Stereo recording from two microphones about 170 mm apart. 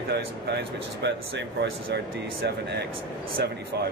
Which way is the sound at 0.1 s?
80° right.